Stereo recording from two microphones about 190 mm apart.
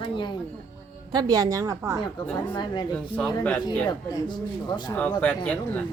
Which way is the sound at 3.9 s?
25° left (ahead or behind).